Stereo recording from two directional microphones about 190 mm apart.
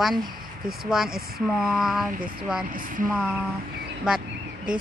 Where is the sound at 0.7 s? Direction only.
Centre (ahead or behind).